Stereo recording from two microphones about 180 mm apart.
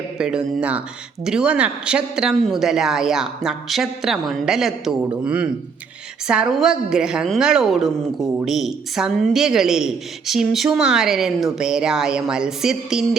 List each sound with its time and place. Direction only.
0.2 s a woman's voice: 5° right (ahead or behind)